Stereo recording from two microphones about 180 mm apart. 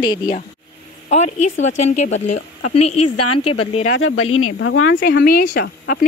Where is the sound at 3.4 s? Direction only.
35° left (ahead or behind).